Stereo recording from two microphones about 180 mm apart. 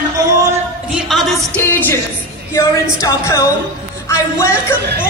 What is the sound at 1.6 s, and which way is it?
Speech, 10° left (ahead or behind).